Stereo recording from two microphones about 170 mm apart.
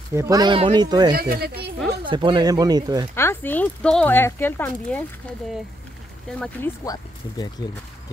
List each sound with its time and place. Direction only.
0.1 s speech: 20° right (ahead or behind)
1.1 s speech: 60° right (ahead or behind)
2.0 s speech: 30° right (ahead or behind)
3.2 s speech: 15° left (ahead or behind)
6.3 s speech: 5° left (ahead or behind)
6.8 s speech: 20° left (ahead or behind)